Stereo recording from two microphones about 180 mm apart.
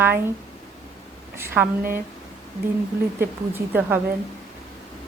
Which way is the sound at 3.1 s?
10° right (ahead or behind).